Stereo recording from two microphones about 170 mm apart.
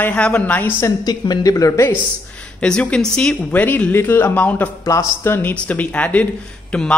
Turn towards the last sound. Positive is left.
turn(degrees=5)  # may be behind; listen again after turning